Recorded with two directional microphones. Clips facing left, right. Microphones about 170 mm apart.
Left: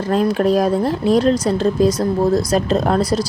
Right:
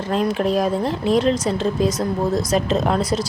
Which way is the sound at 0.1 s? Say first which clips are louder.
Left 4 dB; 40° left (ahead or behind).